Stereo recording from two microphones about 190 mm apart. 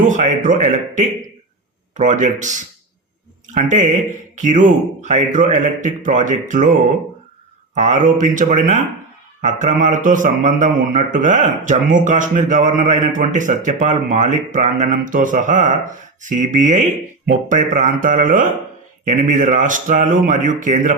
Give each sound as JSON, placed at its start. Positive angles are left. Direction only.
{"t": 0.1, "sound": "speech", "side_deg": -40}
{"t": 7.8, "sound": "speech", "side_deg": -40}